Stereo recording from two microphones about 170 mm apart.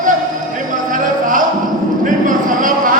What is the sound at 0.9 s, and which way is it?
Music, 50° right (ahead or behind).